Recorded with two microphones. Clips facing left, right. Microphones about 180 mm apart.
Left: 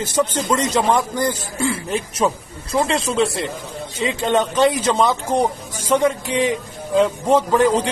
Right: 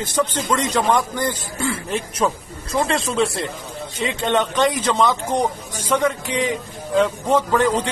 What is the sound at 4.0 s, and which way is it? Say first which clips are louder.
Speech: left 2 dB; 30° left (ahead or behind).